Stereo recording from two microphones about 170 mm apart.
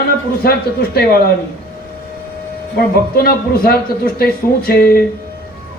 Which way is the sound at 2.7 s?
65° left (ahead or behind).